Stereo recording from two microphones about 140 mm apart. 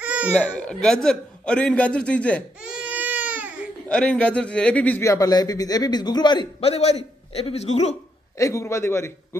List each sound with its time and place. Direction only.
0.0 s baby cry: 10° right (ahead or behind)
0.3 s a man's voice: 10° left (ahead or behind)
2.6 s baby cry: 5° right (ahead or behind)
3.9 s a man's voice: 5° left (ahead or behind)
5.0 s a man's voice: 25° left (ahead or behind)
6.6 s a man's voice: 50° left (ahead or behind)
8.4 s a man's voice: 20° left (ahead or behind)